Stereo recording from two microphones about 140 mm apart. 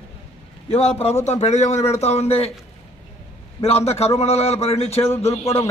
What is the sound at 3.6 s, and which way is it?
A man's voice, 50° left (ahead or behind).